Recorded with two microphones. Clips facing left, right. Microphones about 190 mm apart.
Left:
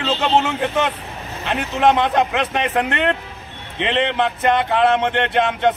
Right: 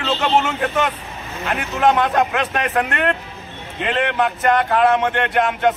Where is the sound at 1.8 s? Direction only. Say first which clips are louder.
Even; 20° left (ahead or behind).